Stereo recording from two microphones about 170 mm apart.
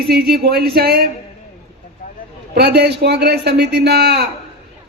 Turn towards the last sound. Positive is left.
turn(degrees=-75)  # may be behind; listen again after turning